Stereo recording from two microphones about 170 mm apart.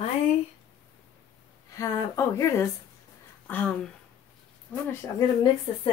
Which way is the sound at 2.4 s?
15° left (ahead or behind).